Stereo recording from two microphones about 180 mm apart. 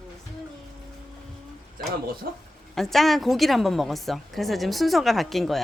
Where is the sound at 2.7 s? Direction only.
Centre (ahead or behind).